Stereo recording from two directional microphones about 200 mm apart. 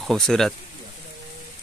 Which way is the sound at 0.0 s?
Centre (ahead or behind).